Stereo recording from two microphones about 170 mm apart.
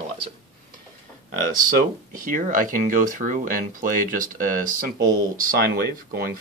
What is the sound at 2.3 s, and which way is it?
Speech, 50° right (ahead or behind).